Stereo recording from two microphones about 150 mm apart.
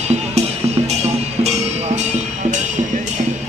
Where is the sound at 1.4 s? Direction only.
45° right (ahead or behind).